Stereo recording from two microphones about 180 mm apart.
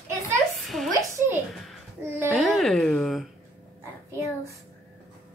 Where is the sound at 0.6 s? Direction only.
Centre (ahead or behind).